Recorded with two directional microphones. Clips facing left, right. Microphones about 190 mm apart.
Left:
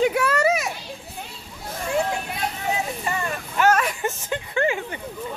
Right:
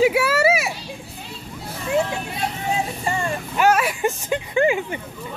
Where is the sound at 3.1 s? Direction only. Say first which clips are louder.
Right 4 dB; 30° right (ahead or behind).